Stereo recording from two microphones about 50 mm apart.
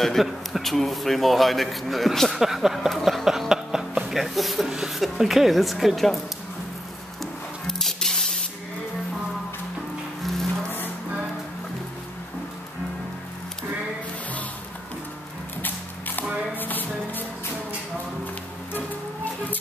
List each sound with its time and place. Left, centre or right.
0.0 s a man's voice: centre
3.3 s speech: centre
7.6 s music: centre
15.6 s a sound: left
16.5 s music: left